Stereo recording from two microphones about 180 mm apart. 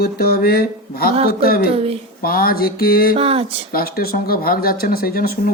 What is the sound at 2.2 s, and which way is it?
Speech, 55° left (ahead or behind).